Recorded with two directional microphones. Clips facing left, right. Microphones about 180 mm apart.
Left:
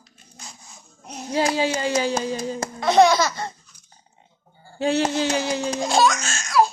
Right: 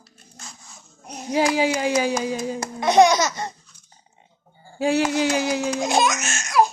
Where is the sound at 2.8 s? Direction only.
20° right (ahead or behind).